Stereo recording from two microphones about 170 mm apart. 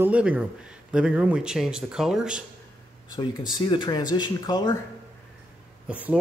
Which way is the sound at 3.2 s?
30° left (ahead or behind).